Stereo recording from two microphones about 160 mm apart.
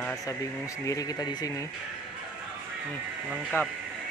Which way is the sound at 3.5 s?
15° left (ahead or behind).